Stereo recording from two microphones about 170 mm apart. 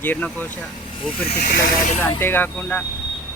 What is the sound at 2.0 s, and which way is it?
Speech, 10° left (ahead or behind).